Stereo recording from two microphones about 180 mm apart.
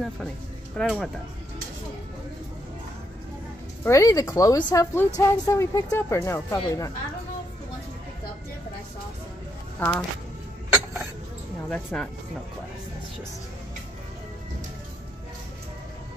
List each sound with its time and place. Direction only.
0.7 s speech: centre (ahead or behind)
3.8 s speech: 15° left (ahead or behind)
9.8 s speech: 10° left (ahead or behind)
10.7 s dishes: 10° right (ahead or behind)
11.7 s speech: 5° left (ahead or behind)